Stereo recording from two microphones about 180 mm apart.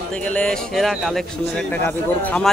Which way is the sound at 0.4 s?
5° left (ahead or behind).